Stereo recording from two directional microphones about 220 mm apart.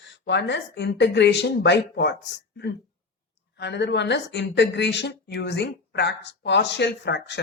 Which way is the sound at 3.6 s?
50° left (ahead or behind).